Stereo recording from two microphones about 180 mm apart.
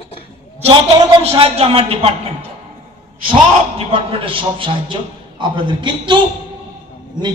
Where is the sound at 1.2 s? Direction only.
35° right (ahead or behind).